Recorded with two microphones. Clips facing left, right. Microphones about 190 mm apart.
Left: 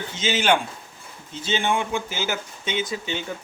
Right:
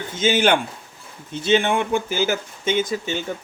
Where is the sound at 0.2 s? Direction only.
55° right (ahead or behind).